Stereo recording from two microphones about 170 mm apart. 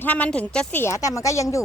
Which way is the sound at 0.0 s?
10° left (ahead or behind).